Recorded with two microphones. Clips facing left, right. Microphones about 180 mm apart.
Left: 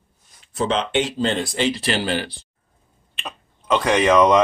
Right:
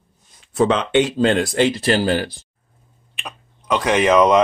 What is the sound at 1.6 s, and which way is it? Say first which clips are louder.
Speech: right 4 dB; 50° right (ahead or behind).